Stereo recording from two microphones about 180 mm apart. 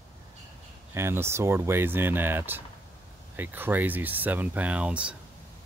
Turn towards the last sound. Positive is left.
turn(degrees=-5)  # may be behind; listen again after turning